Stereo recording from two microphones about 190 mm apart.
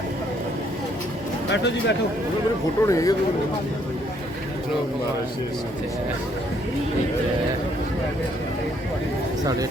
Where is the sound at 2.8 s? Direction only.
15° left (ahead or behind).